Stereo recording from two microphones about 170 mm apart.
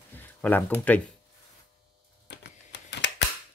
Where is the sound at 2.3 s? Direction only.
90° left.